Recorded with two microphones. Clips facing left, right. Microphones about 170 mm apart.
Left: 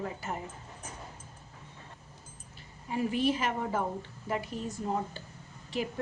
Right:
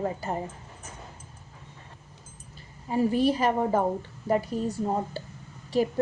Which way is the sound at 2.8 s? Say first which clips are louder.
Right 6 dB; 35° right (ahead or behind).